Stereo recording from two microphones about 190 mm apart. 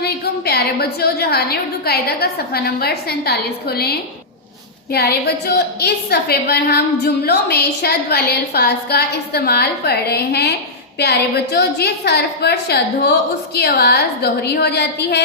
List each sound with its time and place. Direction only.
0.0 s a woman's voice: 55° left (ahead or behind)